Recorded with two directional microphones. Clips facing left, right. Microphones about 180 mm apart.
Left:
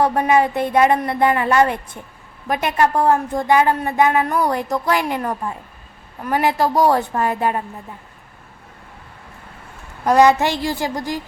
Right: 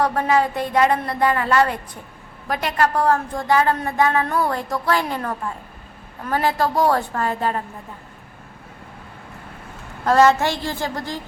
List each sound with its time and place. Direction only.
0.0 s a woman's voice: 20° left (ahead or behind)
10.0 s a woman's voice: 15° left (ahead or behind)